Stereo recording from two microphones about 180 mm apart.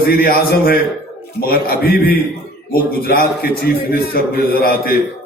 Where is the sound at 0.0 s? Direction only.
55° left (ahead or behind).